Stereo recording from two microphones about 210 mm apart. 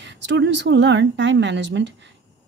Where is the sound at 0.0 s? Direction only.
60° right (ahead or behind).